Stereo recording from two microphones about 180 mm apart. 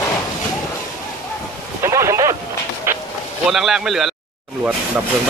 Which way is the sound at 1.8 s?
15° right (ahead or behind).